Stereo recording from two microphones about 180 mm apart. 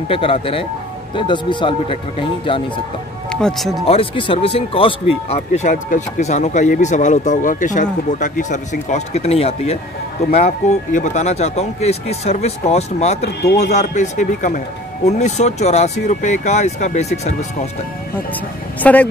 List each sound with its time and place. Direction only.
0.1 s speech: 30° left (ahead or behind)
3.3 s speech: 5° left (ahead or behind)
3.8 s speech: 30° left (ahead or behind)
18.8 s speech: 10° left (ahead or behind)